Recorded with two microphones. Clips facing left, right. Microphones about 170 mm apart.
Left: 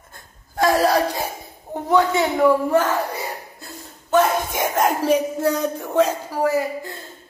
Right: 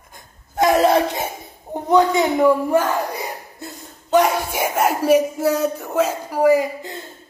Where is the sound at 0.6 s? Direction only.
20° right (ahead or behind).